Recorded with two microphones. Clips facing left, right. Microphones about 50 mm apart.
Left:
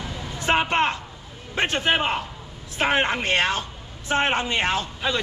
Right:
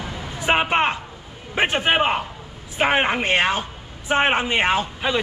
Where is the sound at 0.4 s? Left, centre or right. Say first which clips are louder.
Right 2 dB; centre.